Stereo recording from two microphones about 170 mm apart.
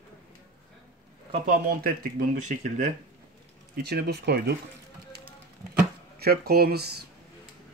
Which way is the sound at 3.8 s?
70° right (ahead or behind).